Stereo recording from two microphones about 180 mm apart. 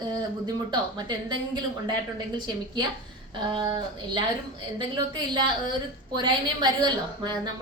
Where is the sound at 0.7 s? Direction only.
25° right (ahead or behind).